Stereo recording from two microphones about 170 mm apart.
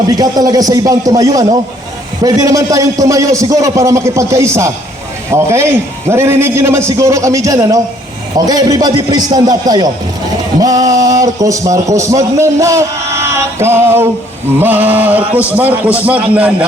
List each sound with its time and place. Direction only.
0.1 s a man's voice: 20° right (ahead or behind)